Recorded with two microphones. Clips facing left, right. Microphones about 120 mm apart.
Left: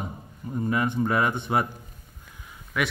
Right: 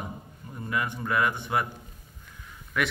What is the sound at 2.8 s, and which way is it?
Speech, 5° left (ahead or behind).